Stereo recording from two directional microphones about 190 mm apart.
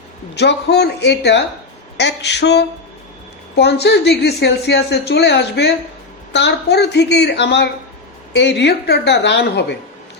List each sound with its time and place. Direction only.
0.3 s a woman's voice: 60° left (ahead or behind)